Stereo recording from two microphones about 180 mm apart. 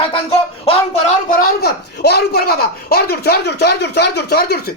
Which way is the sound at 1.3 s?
55° left (ahead or behind).